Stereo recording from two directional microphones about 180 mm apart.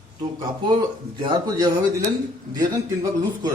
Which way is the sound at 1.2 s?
25° right (ahead or behind).